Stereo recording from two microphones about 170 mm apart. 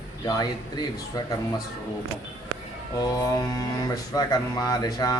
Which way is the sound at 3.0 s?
20° left (ahead or behind).